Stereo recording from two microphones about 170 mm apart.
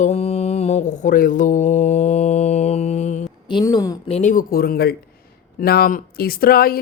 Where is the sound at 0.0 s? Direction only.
40° left (ahead or behind).